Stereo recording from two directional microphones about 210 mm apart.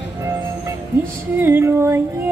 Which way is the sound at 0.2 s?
15° right (ahead or behind).